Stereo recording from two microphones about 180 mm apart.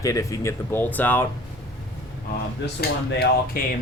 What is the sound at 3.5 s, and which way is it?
Speech, 55° left (ahead or behind).